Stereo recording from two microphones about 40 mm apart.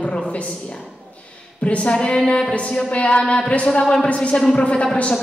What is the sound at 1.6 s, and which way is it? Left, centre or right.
Speech, left.